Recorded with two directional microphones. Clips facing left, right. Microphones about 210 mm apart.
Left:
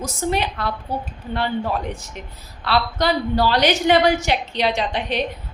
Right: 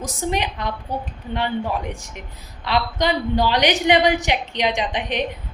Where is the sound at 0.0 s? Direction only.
15° right (ahead or behind).